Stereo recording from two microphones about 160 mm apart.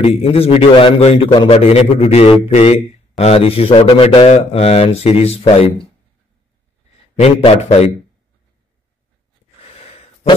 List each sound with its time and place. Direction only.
0.0 s a man's voice: 35° left (ahead or behind)
7.2 s a man's voice: 40° left (ahead or behind)